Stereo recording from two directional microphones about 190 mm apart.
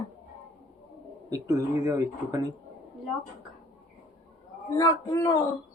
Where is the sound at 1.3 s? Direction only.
20° right (ahead or behind).